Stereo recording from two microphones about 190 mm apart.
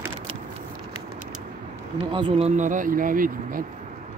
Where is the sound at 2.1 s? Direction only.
30° right (ahead or behind); by 3.6 s 45° right (ahead or behind).